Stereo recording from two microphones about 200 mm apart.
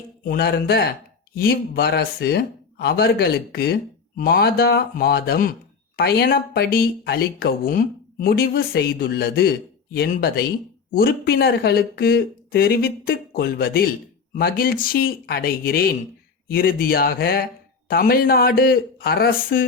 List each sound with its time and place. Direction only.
0.3 s speech: 50° left (ahead or behind)